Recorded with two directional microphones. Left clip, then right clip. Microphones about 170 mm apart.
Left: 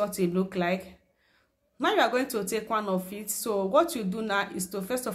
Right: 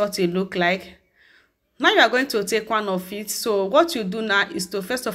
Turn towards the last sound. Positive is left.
turn(degrees=-15)  # may be behind; listen again after turning